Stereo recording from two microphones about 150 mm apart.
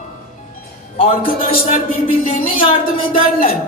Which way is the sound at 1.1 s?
60° left (ahead or behind).